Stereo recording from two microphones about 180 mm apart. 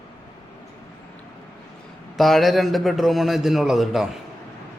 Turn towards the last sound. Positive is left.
turn(degrees=0)  # may be behind; listen again after turning